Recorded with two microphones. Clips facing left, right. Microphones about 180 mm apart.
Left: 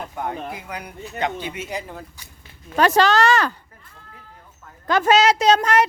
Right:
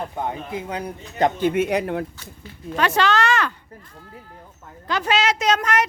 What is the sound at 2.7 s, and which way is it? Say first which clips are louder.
Speech: left 3 dB; 40° left (ahead or behind).